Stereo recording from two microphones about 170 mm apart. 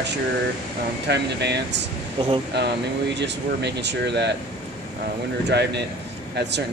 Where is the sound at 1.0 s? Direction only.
80° right.